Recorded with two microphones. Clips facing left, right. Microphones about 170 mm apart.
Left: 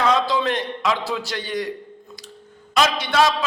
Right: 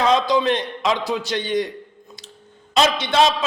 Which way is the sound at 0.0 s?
20° right (ahead or behind).